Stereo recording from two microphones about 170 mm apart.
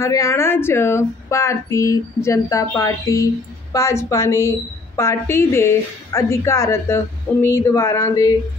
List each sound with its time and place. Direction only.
0.0 s a woman's voice: 20° left (ahead or behind)